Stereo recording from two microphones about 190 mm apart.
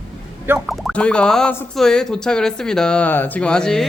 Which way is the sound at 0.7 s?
Centre (ahead or behind).